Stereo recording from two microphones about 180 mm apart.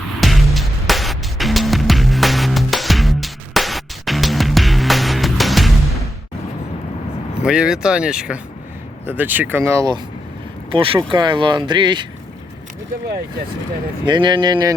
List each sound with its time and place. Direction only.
0.2 s music: centre (ahead or behind)
7.4 s speech: 5° right (ahead or behind)
10.7 s speech: 30° right (ahead or behind)
14.0 s speech: 25° right (ahead or behind)